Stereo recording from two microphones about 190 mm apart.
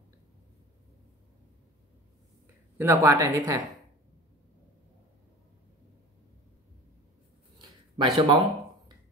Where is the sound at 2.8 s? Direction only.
15° right (ahead or behind).